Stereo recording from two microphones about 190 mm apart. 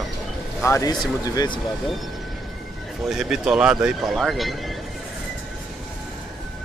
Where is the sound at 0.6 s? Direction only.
15° left (ahead or behind).